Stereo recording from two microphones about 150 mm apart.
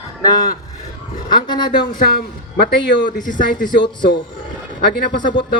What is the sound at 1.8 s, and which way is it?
Speech, 80° left.